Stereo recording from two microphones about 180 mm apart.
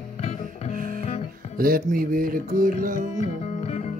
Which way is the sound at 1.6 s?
55° right (ahead or behind).